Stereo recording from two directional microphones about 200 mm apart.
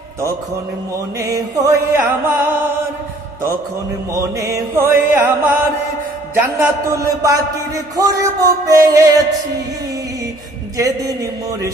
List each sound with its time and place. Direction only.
1.3 s a man's voice: 15° right (ahead or behind)
4.7 s a man's voice: 10° right (ahead or behind)